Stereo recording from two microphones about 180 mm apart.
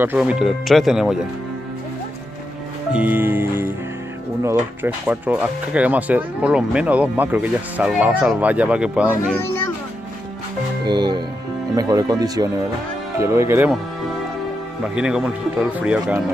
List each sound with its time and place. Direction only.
0.0 s speech: 10° right (ahead or behind)
2.9 s music: 10° right (ahead or behind)
4.4 s speech: 15° right (ahead or behind)
9.4 s music: 15° left (ahead or behind)
10.9 s speech: 25° right (ahead or behind)
15.0 s speech: 5° right (ahead or behind)